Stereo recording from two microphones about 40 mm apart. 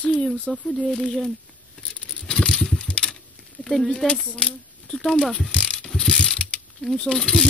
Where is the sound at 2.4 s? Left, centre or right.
Left.